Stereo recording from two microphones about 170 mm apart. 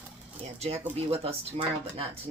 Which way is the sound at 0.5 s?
40° right (ahead or behind).